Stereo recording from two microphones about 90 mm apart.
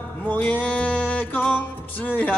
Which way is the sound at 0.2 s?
20° left (ahead or behind).